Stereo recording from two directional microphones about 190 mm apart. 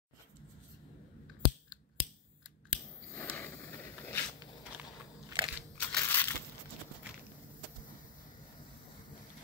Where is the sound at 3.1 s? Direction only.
10° left (ahead or behind).